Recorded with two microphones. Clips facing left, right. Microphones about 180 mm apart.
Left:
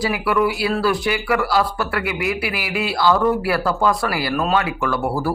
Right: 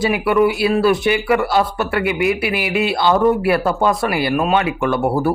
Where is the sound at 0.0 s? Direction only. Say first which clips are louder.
Right 4 dB; 25° right (ahead or behind).